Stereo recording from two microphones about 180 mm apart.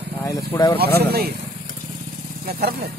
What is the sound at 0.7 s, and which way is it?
Speech, 60° right (ahead or behind).